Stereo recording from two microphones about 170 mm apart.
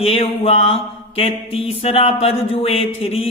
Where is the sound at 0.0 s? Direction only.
35° left (ahead or behind).